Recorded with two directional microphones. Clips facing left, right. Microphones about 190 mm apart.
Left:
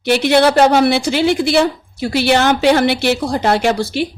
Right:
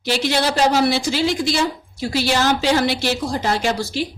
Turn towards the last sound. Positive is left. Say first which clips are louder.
# left 5 dB
turn(degrees=60)  # may be behind; listen again after turning